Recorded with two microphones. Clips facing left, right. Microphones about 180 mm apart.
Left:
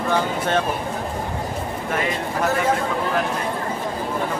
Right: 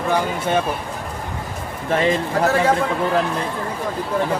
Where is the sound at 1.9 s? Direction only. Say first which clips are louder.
Right 7 dB; 30° right (ahead or behind).